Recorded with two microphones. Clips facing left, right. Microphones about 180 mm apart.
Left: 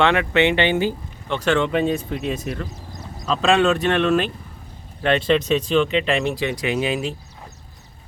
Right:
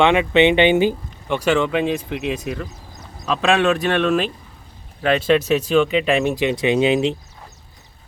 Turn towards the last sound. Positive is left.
turn(degrees=-25)  # may be behind; listen again after turning